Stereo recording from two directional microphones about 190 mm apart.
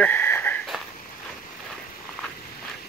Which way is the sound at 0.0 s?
10° left (ahead or behind).